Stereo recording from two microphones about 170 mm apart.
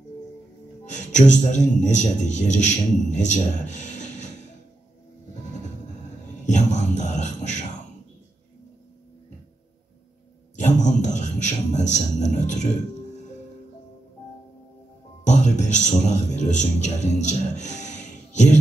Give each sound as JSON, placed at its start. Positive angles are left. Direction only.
{"t": 0.8, "sound": "a man's voice", "side_deg": 45}
{"t": 6.4, "sound": "music", "side_deg": 45}
{"t": 10.5, "sound": "a sound", "side_deg": 45}
{"t": 15.2, "sound": "a man's voice", "side_deg": 45}
{"t": 18.3, "sound": "music", "side_deg": 45}